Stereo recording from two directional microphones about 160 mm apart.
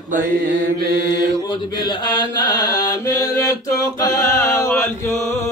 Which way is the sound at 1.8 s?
25° left (ahead or behind).